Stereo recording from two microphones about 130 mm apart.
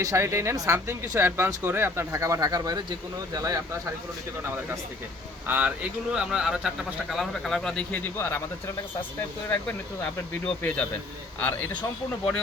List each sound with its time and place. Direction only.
0.0 s speech: 25° right (ahead or behind)
5.5 s speech: 10° right (ahead or behind); by 8.4 s 15° left (ahead or behind)
9.5 s speech: 10° left (ahead or behind)